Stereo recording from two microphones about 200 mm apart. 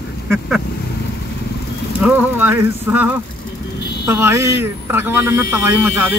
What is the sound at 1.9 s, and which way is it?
Speech, 10° right (ahead or behind).